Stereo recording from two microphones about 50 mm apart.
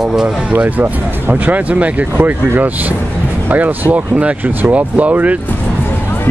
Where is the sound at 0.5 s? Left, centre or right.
Right.